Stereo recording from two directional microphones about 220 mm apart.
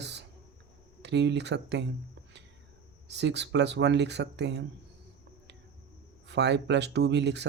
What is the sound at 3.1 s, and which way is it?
Speech, 50° right (ahead or behind).